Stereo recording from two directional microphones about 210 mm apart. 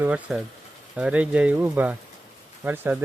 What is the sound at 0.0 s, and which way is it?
Speech, 5° right (ahead or behind).